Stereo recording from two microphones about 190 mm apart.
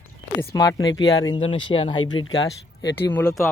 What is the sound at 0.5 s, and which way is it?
Speech, 20° left (ahead or behind).